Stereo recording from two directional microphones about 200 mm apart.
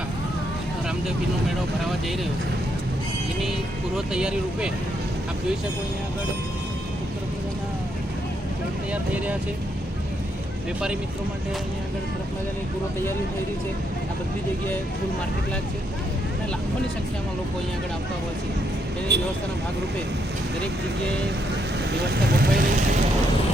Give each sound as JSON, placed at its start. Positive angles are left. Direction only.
{"t": 3.9, "sound": "speech", "side_deg": -5}
{"t": 19.1, "sound": "speech", "side_deg": -55}
{"t": 22.0, "sound": "speech", "side_deg": -55}